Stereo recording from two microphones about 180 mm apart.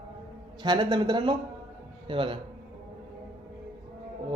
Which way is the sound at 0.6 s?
25° right (ahead or behind).